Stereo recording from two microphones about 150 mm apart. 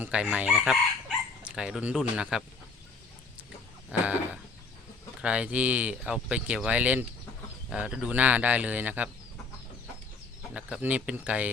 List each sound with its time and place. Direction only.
0.0 s speech: 10° right (ahead or behind)
3.9 s speech: 10° right (ahead or behind)
5.2 s speech: 5° right (ahead or behind)
10.5 s speech: 10° right (ahead or behind)